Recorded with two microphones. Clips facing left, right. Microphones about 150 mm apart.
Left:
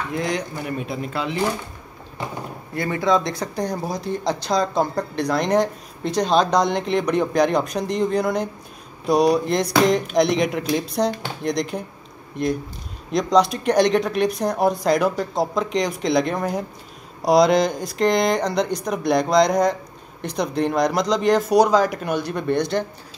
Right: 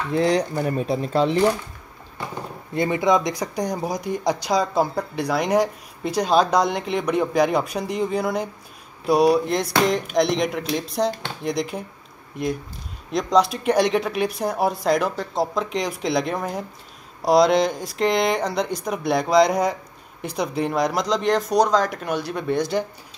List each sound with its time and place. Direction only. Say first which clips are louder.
0.1 s speech: right 8 dB; 35° right (ahead or behind)
2.7 s speech: right 1 dB; 20° right (ahead or behind)